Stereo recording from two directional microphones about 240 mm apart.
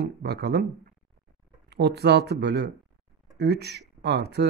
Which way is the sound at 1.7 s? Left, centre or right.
Right.